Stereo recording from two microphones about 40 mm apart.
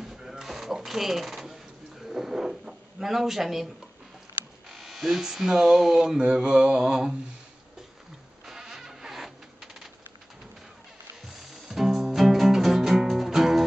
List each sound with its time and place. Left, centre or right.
0.0 s printer: centre
0.8 s speech: centre
2.0 s a sound: centre
4.6 s electric shaver: centre
5.2 s speech: centre
6.3 s mantra: right
6.8 s speech: centre
8.5 s music: centre
11.2 s music: centre